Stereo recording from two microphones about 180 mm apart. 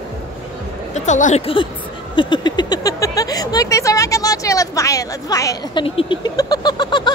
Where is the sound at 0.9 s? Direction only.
40° left (ahead or behind).